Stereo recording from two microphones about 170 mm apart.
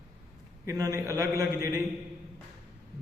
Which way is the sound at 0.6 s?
15° right (ahead or behind).